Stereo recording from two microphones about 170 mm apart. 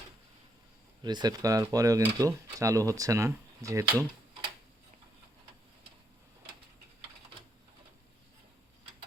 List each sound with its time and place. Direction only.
1.0 s speech: 25° right (ahead or behind)